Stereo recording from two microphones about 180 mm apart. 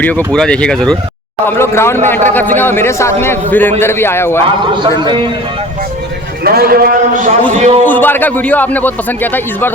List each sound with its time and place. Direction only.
0.3 s a man's voice: 5° left (ahead or behind)
4.7 s a man's voice: 25° right (ahead or behind)
6.4 s a man's voice: 55° right (ahead or behind); by 7.8 s 40° right (ahead or behind)
7.9 s a man's voice: 10° left (ahead or behind)